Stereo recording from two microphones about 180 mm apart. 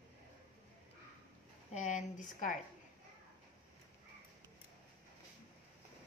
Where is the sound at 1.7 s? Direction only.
40° left (ahead or behind).